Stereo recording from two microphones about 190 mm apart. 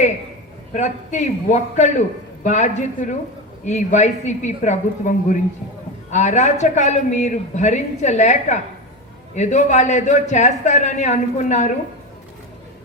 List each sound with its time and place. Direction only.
0.7 s a man's voice: 40° left (ahead or behind)